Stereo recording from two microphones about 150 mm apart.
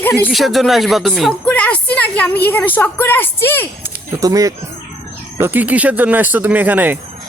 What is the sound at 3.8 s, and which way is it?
Speech, 20° right (ahead or behind).